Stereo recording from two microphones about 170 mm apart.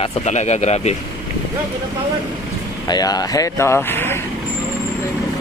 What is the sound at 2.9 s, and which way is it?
Speech, 20° left (ahead or behind).